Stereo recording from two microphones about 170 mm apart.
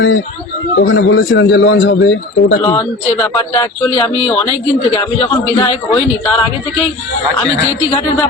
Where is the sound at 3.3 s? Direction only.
20° left (ahead or behind).